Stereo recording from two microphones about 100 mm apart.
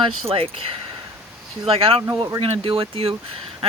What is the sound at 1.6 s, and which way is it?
Speech, 70° right (ahead or behind).